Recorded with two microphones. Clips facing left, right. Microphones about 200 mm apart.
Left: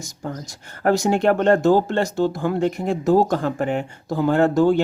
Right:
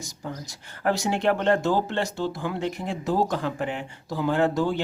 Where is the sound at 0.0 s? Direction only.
50° left (ahead or behind).